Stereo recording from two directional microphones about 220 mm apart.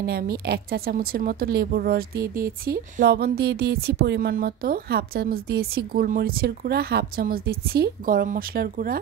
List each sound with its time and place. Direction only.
0.0 s speech: 45° right (ahead or behind)